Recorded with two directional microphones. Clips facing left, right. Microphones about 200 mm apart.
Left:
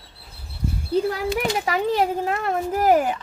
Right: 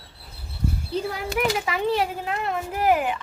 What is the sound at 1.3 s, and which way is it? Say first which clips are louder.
Speech: left 1 dB; 35° left (ahead or behind).